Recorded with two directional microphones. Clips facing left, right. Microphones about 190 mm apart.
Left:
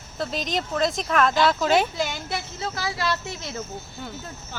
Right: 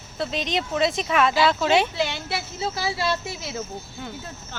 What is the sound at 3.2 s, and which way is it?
A woman's voice, 5° right (ahead or behind).